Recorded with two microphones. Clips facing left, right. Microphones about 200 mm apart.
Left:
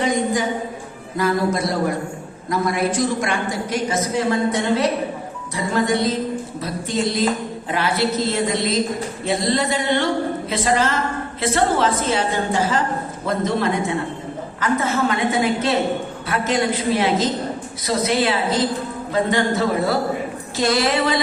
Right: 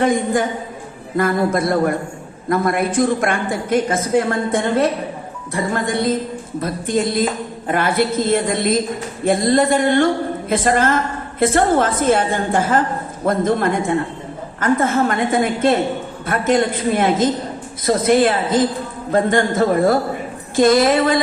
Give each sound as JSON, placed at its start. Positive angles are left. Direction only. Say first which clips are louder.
{"t": 0.0, "sound": "a woman's voice", "louder": "right 3 dB", "side_deg": -55}